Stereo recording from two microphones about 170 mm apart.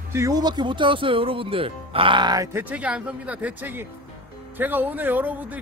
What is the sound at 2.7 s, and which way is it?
A man's voice, 5° right (ahead or behind).